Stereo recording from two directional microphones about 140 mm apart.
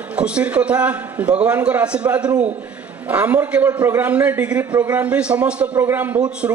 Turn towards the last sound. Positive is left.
turn(degrees=-20)  # may be behind; listen again after turning